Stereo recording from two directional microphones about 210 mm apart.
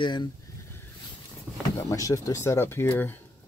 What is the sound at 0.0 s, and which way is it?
Speech, 20° left (ahead or behind).